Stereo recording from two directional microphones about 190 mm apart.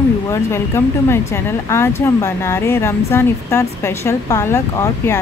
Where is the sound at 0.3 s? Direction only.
15° left (ahead or behind).